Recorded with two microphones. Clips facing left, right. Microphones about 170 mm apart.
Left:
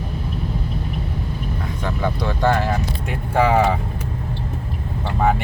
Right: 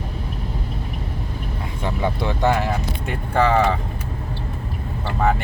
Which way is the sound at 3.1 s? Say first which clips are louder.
Left 1 dB; 5° left (ahead or behind).